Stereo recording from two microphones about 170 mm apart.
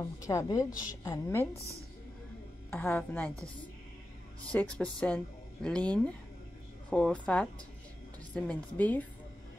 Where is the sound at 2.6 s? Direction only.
10° left (ahead or behind).